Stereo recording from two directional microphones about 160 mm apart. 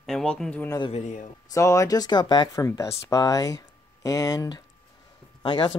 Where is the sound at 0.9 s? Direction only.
45° left (ahead or behind).